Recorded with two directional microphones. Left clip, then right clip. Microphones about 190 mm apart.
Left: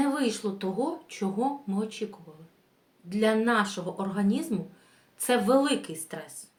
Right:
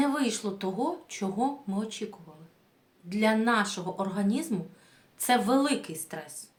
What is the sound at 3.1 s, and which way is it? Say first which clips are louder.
A woman's voice: left 1 dB; 25° right (ahead or behind).